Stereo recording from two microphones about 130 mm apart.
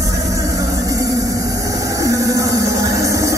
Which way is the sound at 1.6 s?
25° right (ahead or behind).